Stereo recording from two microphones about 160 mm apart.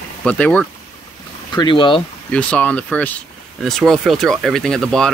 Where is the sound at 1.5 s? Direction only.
30° left (ahead or behind).